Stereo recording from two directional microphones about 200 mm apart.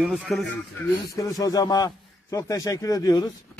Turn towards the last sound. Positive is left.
turn(degrees=15)  # may be behind; listen again after turning